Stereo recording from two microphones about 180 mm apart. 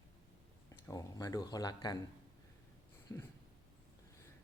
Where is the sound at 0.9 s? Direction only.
20° left (ahead or behind).